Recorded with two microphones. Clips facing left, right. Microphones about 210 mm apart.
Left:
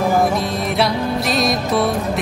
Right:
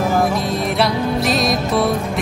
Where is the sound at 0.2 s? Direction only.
Centre (ahead or behind).